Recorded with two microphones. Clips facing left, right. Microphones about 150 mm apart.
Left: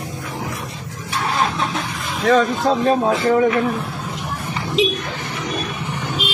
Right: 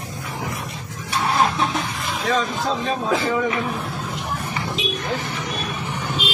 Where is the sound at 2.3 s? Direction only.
60° left (ahead or behind).